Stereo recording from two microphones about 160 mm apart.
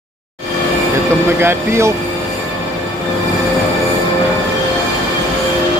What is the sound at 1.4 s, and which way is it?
Speech, 15° right (ahead or behind).